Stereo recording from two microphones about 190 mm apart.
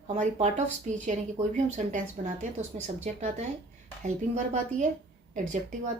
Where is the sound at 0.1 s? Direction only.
40° right (ahead or behind).